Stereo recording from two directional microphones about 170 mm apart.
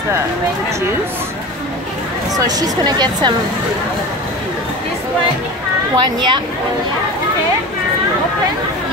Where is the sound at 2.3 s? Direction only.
20° right (ahead or behind).